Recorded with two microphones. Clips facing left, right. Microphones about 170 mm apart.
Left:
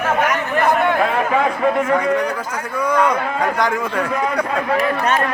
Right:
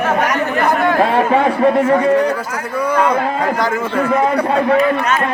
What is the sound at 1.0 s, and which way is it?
A man's voice, 30° right (ahead or behind).